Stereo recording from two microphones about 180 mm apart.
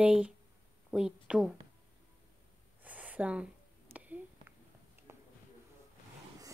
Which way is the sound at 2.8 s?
10° right (ahead or behind).